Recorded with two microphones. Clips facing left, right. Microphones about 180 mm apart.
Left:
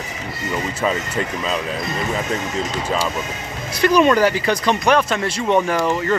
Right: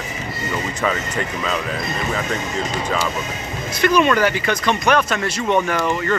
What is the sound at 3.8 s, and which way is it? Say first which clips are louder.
Speech: left 2 dB; 35° left (ahead or behind).